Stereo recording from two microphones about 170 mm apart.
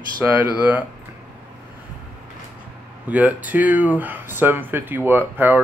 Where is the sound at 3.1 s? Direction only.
10° right (ahead or behind).